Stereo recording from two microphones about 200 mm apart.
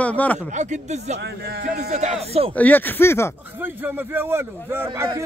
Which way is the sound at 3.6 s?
10° right (ahead or behind).